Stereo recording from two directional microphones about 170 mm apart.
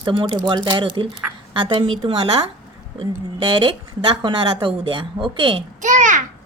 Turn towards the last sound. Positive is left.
turn(degrees=-45)  # may be behind; listen again after turning